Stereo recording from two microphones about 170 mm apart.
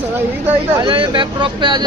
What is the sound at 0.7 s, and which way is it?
Speech, 30° right (ahead or behind).